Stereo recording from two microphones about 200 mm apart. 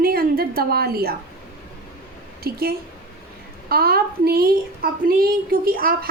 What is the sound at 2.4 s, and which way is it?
A woman's voice, 50° right (ahead or behind).